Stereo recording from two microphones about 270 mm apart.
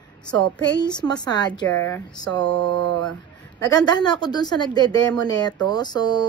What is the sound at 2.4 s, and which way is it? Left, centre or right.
Mantra, right.